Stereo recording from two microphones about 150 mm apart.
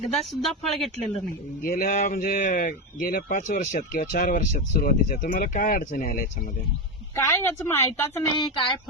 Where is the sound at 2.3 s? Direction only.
55° left (ahead or behind).